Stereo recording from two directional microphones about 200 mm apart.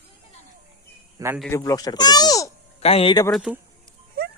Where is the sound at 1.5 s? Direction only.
15° left (ahead or behind).